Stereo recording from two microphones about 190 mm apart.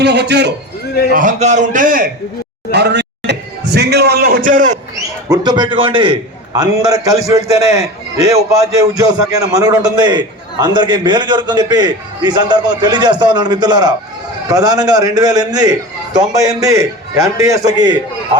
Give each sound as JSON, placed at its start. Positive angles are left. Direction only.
{"t": 0.0, "sound": "a man's voice", "side_deg": -60}
{"t": 1.1, "sound": "a man's voice", "side_deg": -40}
{"t": 2.7, "sound": "a sound", "side_deg": -65}
{"t": 5.3, "sound": "a man's voice", "side_deg": -20}